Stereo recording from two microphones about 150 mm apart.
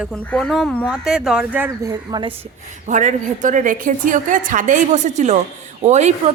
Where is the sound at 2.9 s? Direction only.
55° right (ahead or behind).